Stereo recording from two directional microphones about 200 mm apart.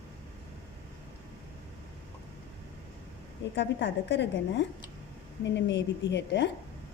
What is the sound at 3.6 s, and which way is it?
Speech, 65° left (ahead or behind).